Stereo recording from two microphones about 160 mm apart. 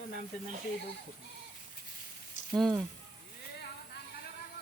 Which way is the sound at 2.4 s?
50° left (ahead or behind).